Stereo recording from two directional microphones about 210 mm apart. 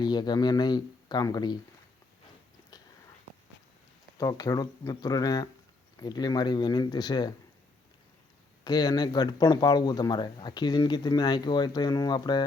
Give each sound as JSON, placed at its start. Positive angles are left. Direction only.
{"t": 0.0, "sound": "speech", "side_deg": 20}
{"t": 4.2, "sound": "speech", "side_deg": 15}
{"t": 8.6, "sound": "speech", "side_deg": 20}